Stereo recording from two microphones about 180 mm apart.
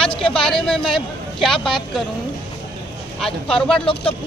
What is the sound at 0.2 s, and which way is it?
Speech, 5° left (ahead or behind).